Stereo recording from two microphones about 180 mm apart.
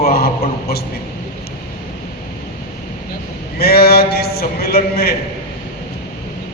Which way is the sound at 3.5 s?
60° left (ahead or behind).